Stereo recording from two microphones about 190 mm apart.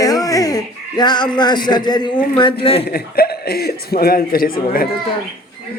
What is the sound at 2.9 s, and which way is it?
A man's voice, 55° left (ahead or behind).